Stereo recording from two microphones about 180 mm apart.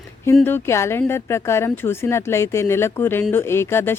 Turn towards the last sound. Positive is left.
turn(degrees=15)  # may be behind; listen again after turning